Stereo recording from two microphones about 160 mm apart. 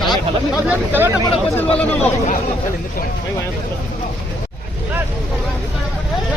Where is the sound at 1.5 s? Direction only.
10° left (ahead or behind).